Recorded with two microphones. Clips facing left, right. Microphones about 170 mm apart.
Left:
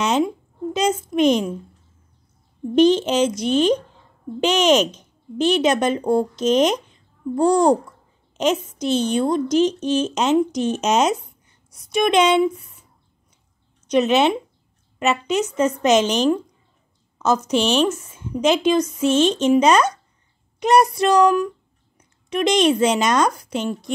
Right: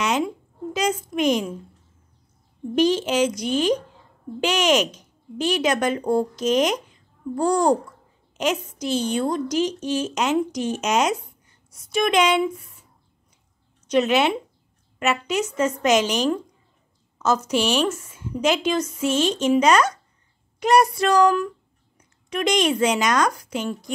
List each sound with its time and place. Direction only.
0.7 s a child's voice: 25° left (ahead or behind)
2.7 s a woman's voice: 25° left (ahead or behind)
13.8 s a woman's voice: 20° left (ahead or behind)